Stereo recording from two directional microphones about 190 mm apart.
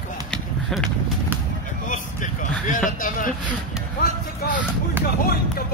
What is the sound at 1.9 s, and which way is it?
Vehicle, 45° left (ahead or behind).